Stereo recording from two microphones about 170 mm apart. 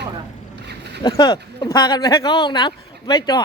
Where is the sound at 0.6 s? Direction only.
80° right.